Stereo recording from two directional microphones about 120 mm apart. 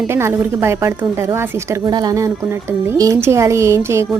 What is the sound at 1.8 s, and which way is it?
A woman's voice, 30° right (ahead or behind).